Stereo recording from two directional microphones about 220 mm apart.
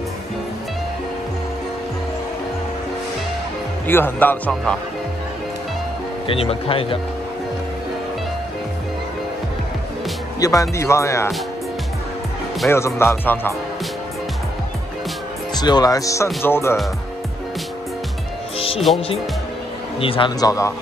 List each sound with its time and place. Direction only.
3.8 s speech: 10° left (ahead or behind)
6.2 s speech: 25° left (ahead or behind)
10.4 s speech: 15° left (ahead or behind)
12.6 s speech: 10° left (ahead or behind)
15.5 s speech: 20° left (ahead or behind)
20.0 s speech: 25° left (ahead or behind)